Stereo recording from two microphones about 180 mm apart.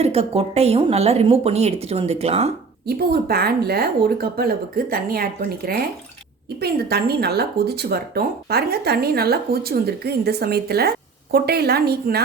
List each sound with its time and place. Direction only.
0.0 s a woman's voice: 35° right (ahead or behind)
2.8 s speech: 60° right (ahead or behind)